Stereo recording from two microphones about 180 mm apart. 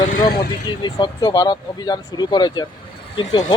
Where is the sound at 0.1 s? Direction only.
55° left (ahead or behind).